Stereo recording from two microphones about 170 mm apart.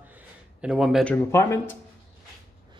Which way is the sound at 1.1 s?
15° left (ahead or behind).